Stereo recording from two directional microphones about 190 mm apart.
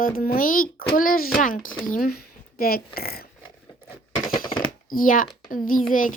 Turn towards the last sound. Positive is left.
turn(degrees=45)  # may be behind; listen again after turning